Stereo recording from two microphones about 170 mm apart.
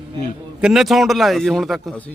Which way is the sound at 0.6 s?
Centre (ahead or behind).